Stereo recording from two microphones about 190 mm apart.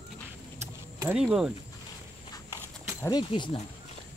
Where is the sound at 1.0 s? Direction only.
5° right (ahead or behind).